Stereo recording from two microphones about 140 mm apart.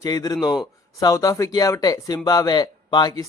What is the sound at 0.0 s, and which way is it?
A man's voice, 25° left (ahead or behind).